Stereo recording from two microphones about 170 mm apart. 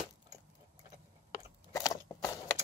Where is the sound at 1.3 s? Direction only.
20° left (ahead or behind).